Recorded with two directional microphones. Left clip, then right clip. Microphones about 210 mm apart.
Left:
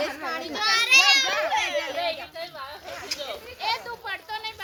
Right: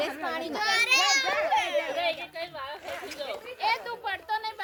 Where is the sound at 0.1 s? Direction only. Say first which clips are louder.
Left 1 dB; 50° right (ahead or behind).